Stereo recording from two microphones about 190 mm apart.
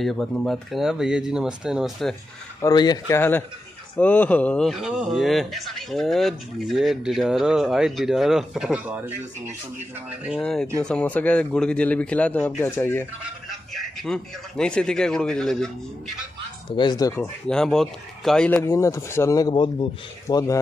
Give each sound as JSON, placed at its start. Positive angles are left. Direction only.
{"t": 0.0, "sound": "speech", "side_deg": 0}
{"t": 2.6, "sound": "speech", "side_deg": 20}
{"t": 10.4, "sound": "speech", "side_deg": 5}
{"t": 13.2, "sound": "a man's voice", "side_deg": 0}
{"t": 16.7, "sound": "speech", "side_deg": 20}
{"t": 17.1, "sound": "speech", "side_deg": 5}